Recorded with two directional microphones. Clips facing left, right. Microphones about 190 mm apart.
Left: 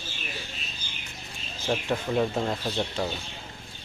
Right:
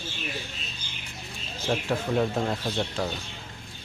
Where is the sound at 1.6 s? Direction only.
Centre (ahead or behind).